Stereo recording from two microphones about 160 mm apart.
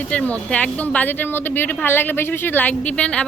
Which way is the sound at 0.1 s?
10° left (ahead or behind).